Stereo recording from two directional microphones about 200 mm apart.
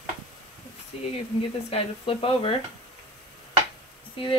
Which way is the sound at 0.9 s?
30° left (ahead or behind).